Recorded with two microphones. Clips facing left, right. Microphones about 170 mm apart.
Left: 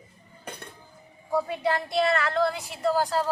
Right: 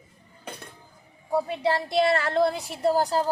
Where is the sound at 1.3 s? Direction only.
30° right (ahead or behind).